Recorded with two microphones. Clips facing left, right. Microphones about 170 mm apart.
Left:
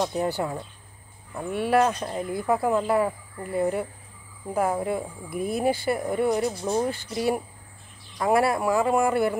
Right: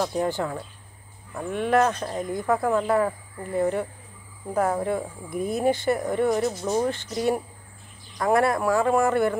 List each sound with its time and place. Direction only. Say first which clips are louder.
0.4 s speech: even; 15° left (ahead or behind)